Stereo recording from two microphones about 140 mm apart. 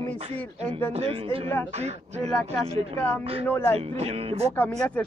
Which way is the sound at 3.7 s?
50° right (ahead or behind).